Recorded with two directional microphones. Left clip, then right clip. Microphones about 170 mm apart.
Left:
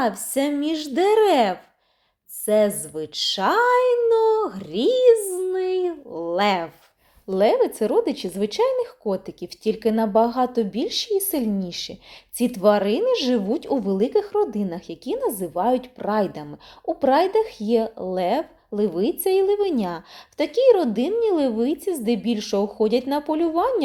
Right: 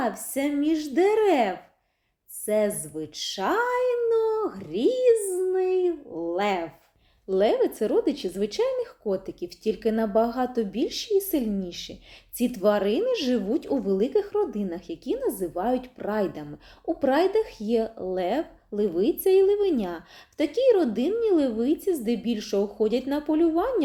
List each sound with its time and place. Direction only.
0.0 s a woman's voice: 30° left (ahead or behind)
7.3 s a woman's voice: 25° left (ahead or behind)